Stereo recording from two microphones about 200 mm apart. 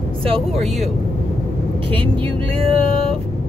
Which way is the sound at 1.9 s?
25° right (ahead or behind).